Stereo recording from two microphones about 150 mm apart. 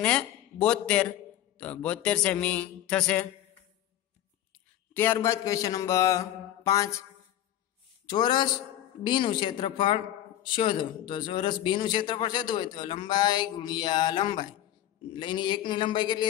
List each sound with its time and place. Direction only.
0.0 s a man's voice: 5° left (ahead or behind)
4.9 s mantra: 15° left (ahead or behind)
8.1 s a woman's voice: 30° left (ahead or behind)